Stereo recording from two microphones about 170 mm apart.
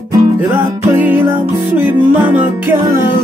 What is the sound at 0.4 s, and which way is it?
Music, 10° right (ahead or behind).